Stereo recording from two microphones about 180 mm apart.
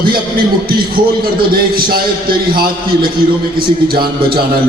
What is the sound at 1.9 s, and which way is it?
A man's voice, 55° right (ahead or behind).